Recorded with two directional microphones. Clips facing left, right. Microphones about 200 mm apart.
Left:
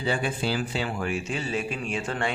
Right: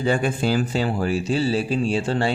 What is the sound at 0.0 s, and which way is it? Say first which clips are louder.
Speech: right 6 dB; 45° right (ahead or behind).